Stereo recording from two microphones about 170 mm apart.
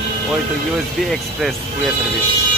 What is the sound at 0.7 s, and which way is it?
Speech, centre (ahead or behind).